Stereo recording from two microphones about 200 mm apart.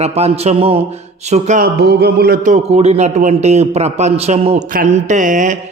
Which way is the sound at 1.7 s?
55° right (ahead or behind).